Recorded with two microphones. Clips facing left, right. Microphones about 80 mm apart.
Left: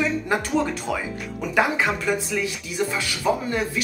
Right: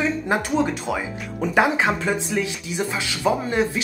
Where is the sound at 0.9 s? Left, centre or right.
Right.